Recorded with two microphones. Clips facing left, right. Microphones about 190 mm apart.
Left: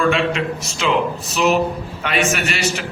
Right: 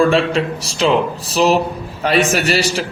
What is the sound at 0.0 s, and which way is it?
A man's voice, 35° right (ahead or behind).